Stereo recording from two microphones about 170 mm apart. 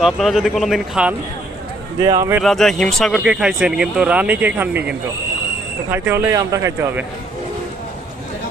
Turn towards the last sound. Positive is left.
turn(degrees=-15)  # may be behind; listen again after turning